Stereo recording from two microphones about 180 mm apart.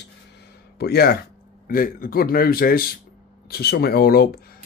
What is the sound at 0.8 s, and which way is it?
A man's voice, 60° left (ahead or behind).